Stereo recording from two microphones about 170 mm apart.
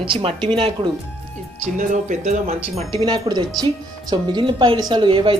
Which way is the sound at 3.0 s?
25° right (ahead or behind).